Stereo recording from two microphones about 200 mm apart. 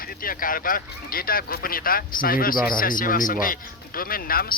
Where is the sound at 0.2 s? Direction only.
45° left (ahead or behind).